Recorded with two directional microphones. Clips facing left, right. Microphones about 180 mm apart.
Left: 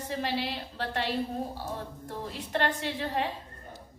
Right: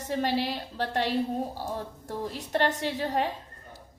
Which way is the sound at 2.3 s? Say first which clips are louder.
Right 2 dB; 40° right (ahead or behind).